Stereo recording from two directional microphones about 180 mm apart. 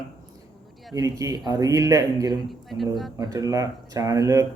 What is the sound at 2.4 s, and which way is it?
Speech, centre (ahead or behind).